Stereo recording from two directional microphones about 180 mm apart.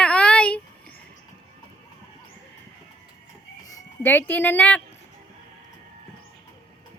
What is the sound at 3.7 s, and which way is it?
Speech, 10° left (ahead or behind).